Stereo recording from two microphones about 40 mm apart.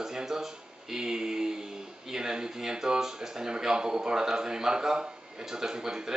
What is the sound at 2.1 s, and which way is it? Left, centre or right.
Speech, centre.